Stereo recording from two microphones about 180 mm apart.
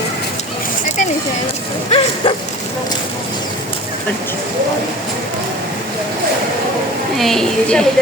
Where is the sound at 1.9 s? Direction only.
30° left (ahead or behind).